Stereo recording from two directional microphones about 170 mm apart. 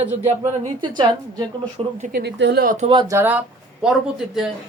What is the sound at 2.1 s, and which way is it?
Speech, 75° right (ahead or behind).